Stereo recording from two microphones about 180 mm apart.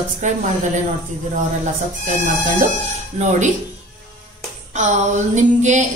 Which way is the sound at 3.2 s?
40° right (ahead or behind).